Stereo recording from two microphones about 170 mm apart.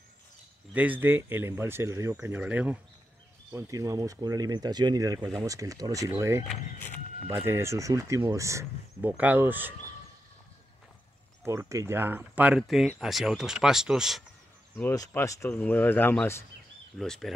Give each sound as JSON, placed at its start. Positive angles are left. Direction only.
{"t": 0.7, "sound": "speech", "side_deg": -10}
{"t": 6.4, "sound": "speech", "side_deg": 5}
{"t": 7.2, "sound": "speech", "side_deg": -15}
{"t": 11.4, "sound": "speech", "side_deg": -15}
{"t": 14.8, "sound": "speech", "side_deg": 15}
{"t": 17.0, "sound": "speech", "side_deg": 5}